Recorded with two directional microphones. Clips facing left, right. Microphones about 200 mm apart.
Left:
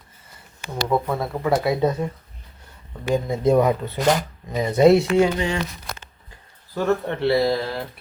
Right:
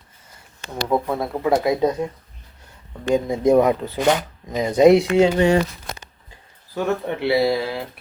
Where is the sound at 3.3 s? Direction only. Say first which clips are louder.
Right 2 dB; 15° right (ahead or behind).